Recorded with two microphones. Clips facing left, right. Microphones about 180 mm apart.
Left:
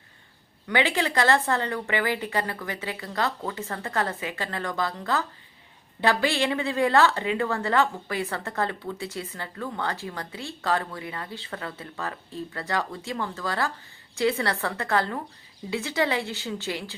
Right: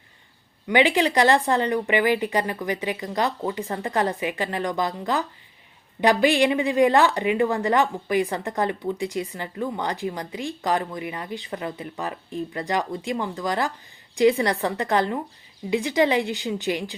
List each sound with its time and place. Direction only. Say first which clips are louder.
0.7 s speech: right 5 dB; 15° right (ahead or behind)